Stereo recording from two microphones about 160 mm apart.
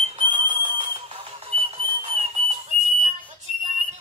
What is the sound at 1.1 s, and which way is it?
Whistle, 40° right (ahead or behind).